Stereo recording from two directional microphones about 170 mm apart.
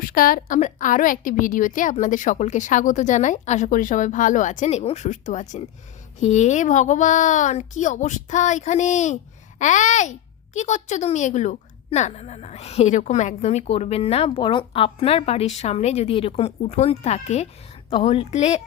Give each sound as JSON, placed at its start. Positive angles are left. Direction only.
{"t": 0.0, "sound": "a woman's voice", "side_deg": 60}